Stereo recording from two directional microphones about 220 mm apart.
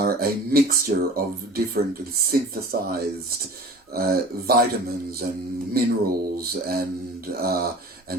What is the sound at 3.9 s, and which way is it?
Speech, 45° right (ahead or behind).